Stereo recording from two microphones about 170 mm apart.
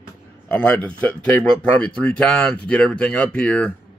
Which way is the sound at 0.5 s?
10° left (ahead or behind).